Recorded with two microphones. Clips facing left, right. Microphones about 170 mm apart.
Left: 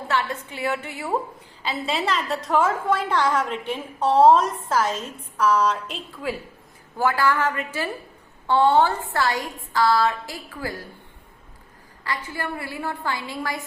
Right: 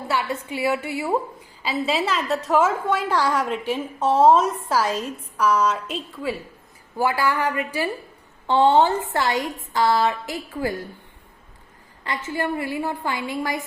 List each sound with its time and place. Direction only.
0.1 s a woman's voice: 10° right (ahead or behind)
12.0 s a woman's voice: 20° right (ahead or behind)